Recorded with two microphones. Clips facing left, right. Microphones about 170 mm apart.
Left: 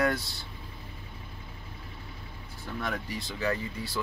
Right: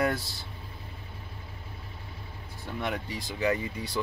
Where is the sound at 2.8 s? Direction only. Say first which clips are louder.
Right 2 dB; 20° right (ahead or behind).